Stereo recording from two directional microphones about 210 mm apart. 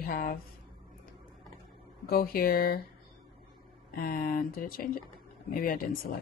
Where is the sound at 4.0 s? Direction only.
45° left (ahead or behind).